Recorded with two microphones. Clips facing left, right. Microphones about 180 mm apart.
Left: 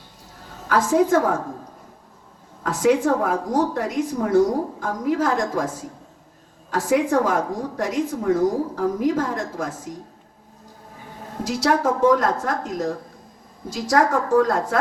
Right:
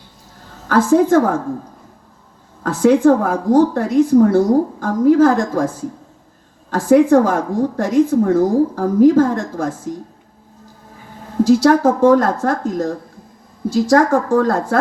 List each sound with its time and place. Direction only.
0.7 s a woman's voice: 30° right (ahead or behind)
2.6 s a woman's voice: 30° right (ahead or behind)
6.7 s a woman's voice: 30° right (ahead or behind)
11.4 s a woman's voice: 30° right (ahead or behind)